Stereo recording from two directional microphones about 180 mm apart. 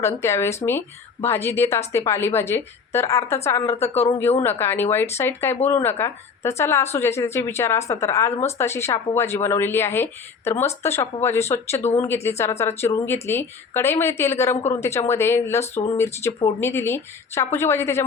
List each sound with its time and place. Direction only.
0.0 s speech: 15° left (ahead or behind)
3.8 s speech: 35° left (ahead or behind)
4.4 s speech: 10° left (ahead or behind)